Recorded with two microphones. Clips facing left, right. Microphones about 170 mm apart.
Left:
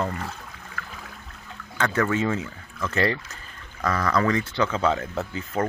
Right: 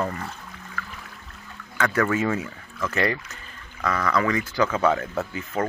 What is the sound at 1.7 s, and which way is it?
Speech, 25° left (ahead or behind).